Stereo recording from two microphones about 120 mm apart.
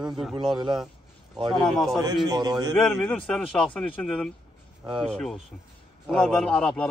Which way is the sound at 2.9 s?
15° left (ahead or behind).